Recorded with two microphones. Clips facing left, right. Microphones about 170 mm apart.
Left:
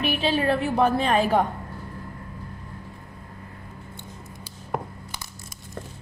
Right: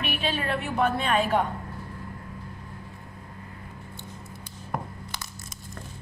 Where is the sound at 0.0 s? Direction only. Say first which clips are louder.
Left 6 dB; 35° left (ahead or behind).